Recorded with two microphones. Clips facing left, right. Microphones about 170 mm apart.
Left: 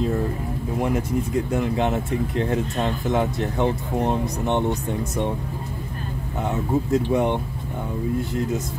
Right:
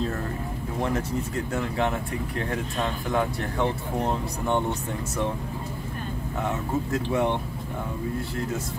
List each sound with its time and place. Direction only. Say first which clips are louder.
0.7 s speech: left 4 dB; 15° left (ahead or behind)
6.4 s speech: left 5 dB; 15° left (ahead or behind)